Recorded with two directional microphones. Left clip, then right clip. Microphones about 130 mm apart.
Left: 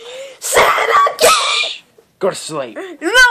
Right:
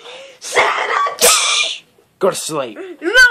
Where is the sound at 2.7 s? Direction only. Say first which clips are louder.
Left 2 dB; 90° left.